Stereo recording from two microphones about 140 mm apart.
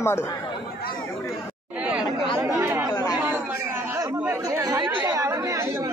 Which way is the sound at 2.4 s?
20° right (ahead or behind).